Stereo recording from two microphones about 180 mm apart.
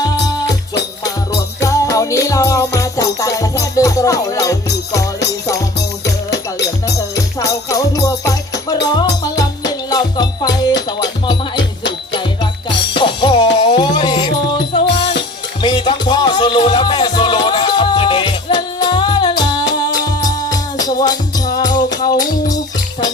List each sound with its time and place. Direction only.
0.0 s music: 20° left (ahead or behind)
6.6 s music: 20° left (ahead or behind)
11.9 s music: 25° left (ahead or behind)
15.6 s music: 25° left (ahead or behind)